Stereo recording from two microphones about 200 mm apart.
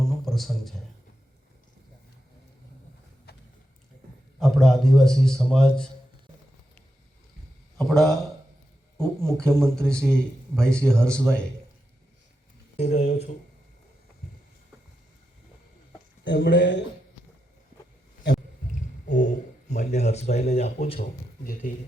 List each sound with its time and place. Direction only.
0.3 s a man's voice: centre (ahead or behind)
3.3 s a sound: 55° left (ahead or behind)
4.4 s a man's voice: centre (ahead or behind)
7.8 s a man's voice: centre (ahead or behind)
12.7 s speech: 35° left (ahead or behind)
16.2 s speech: 60° left (ahead or behind)
19.0 s a sound: 35° left (ahead or behind)
19.7 s speech: 35° left (ahead or behind)
21.4 s speech: 45° left (ahead or behind)